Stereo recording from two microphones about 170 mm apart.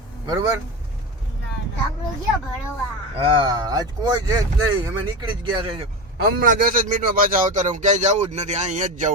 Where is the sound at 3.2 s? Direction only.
30° right (ahead or behind).